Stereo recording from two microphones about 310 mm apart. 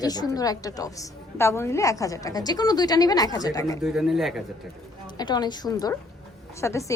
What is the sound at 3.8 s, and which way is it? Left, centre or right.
Speech, centre.